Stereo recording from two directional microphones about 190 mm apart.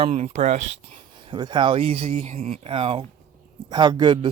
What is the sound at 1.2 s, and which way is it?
Speech, 25° right (ahead or behind).